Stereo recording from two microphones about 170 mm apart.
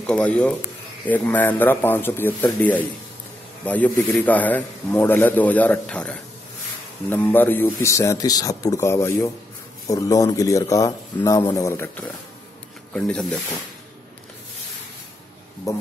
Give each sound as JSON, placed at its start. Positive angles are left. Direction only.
{"t": 0.0, "sound": "a man's voice", "side_deg": 5}
{"t": 15.7, "sound": "a man's voice", "side_deg": 15}